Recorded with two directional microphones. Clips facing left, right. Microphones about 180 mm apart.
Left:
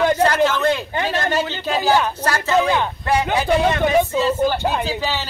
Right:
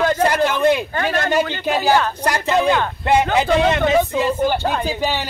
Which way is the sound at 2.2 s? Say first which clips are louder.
Even; 15° right (ahead or behind).